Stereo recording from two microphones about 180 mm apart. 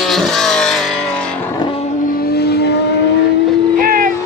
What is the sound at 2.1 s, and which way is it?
Vehicle, 55° left (ahead or behind).